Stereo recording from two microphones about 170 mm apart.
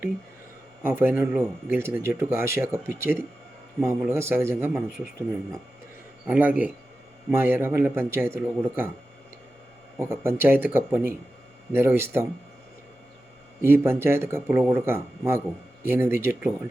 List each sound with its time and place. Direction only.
0.8 s speech: 10° right (ahead or behind)
6.2 s speech: 10° right (ahead or behind)
10.0 s speech: 15° right (ahead or behind)
13.6 s speech: 15° right (ahead or behind)